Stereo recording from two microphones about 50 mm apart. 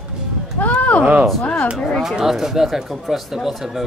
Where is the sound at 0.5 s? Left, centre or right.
Left.